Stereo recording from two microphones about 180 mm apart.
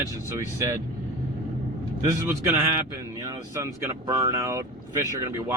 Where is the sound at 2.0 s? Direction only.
15° right (ahead or behind).